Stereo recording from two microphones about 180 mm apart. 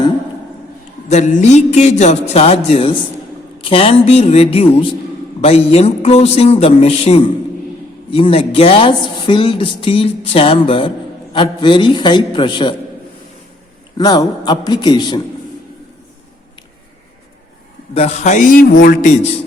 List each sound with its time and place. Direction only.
1.0 s a man's voice: 40° left (ahead or behind); by 12.7 s 25° left (ahead or behind)
14.0 s a man's voice: 20° left (ahead or behind)
17.9 s a man's voice: 35° left (ahead or behind)